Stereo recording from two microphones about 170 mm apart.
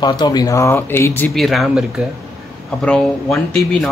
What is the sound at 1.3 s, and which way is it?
Speech, centre (ahead or behind).